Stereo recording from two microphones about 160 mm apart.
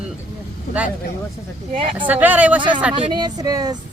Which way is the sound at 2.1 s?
10° right (ahead or behind).